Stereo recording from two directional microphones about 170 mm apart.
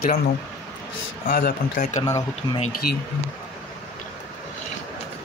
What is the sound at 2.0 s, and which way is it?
Speech, 20° left (ahead or behind).